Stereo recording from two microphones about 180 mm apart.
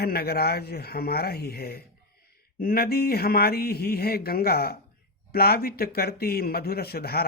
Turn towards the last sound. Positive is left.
turn(degrees=60)  # may be behind; listen again after turning